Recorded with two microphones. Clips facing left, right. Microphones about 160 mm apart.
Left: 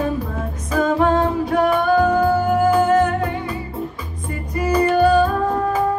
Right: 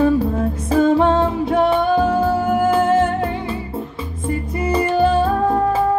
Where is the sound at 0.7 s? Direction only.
30° right (ahead or behind).